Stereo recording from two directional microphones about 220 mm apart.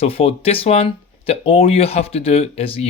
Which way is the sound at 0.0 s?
25° left (ahead or behind).